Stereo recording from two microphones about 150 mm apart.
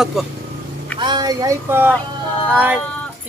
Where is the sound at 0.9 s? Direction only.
30° right (ahead or behind).